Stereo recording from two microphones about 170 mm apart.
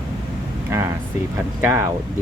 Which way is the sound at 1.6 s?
15° right (ahead or behind).